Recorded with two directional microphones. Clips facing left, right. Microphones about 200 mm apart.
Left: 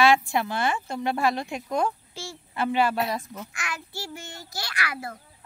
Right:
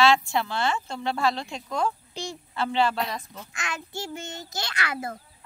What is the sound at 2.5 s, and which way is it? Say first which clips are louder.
Speech: left 1 dB; 15° left (ahead or behind).